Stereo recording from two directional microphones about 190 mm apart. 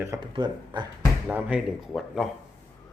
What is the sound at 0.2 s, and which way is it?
Speech, 25° right (ahead or behind).